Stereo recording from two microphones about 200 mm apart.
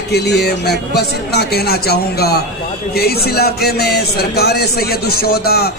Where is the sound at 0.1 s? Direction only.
55° left (ahead or behind).